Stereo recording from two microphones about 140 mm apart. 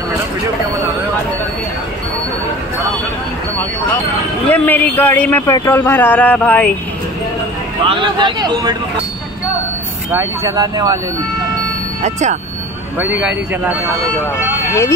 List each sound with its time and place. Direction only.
4.5 s a sound: 15° left (ahead or behind)
5.5 s speech: 20° left (ahead or behind)
7.8 s a man's voice: 35° right (ahead or behind)
10.1 s speech: 25° right (ahead or behind)
12.0 s speech: 55° right (ahead or behind)
13.0 s speech: 10° right (ahead or behind)
14.7 s speech: 20° left (ahead or behind)